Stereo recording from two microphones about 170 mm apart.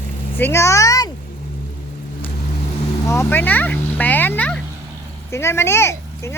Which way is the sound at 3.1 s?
15° left (ahead or behind).